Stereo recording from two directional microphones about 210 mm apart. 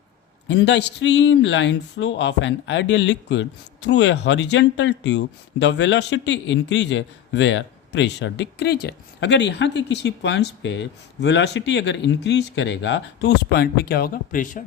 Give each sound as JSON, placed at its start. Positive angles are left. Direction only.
{"t": 0.4, "sound": "speech", "side_deg": 55}